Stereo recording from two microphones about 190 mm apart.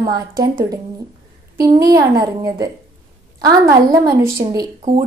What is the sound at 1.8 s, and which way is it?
A woman's voice, 20° right (ahead or behind).